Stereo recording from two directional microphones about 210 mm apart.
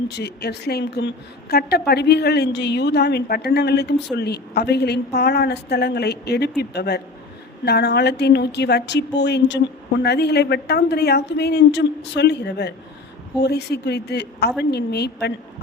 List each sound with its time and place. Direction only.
0.1 s a woman's voice: 50° left (ahead or behind)